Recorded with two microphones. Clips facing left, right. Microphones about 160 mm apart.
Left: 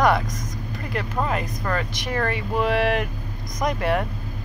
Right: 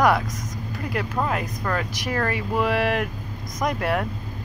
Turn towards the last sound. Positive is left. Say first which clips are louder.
# left 1 dB
turn(degrees=0)  # may be behind; listen again after turning